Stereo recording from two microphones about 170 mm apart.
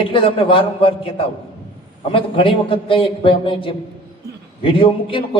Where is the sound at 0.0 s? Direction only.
30° left (ahead or behind).